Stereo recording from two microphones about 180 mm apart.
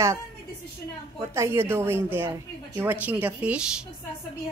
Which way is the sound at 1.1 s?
15° right (ahead or behind).